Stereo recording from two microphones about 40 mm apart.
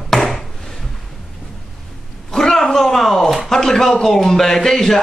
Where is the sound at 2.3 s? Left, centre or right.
Centre.